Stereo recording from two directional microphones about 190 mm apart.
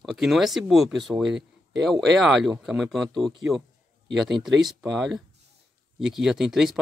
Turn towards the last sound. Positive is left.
turn(degrees=0)  # may be behind; listen again after turning